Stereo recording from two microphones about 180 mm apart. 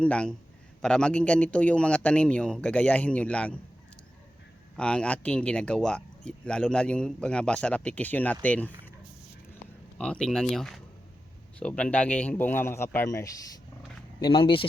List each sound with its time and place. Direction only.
0.0 s a man's voice: 5° left (ahead or behind)
4.8 s speech: 5° left (ahead or behind)
10.0 s a man's voice: 5° left (ahead or behind)
14.2 s speech: 30° left (ahead or behind)